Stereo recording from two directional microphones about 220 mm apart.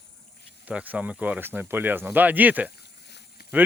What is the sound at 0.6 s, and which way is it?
Speech, 5° right (ahead or behind).